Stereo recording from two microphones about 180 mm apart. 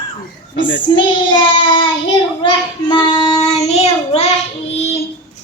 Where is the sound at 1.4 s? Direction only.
25° left (ahead or behind).